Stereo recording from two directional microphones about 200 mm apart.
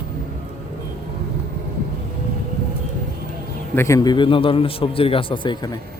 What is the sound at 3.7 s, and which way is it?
A man's voice, 15° left (ahead or behind).